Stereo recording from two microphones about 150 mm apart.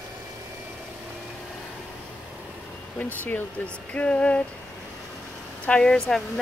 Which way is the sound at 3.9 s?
10° left (ahead or behind).